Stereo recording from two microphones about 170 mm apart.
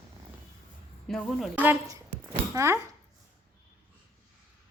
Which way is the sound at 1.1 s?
Centre (ahead or behind).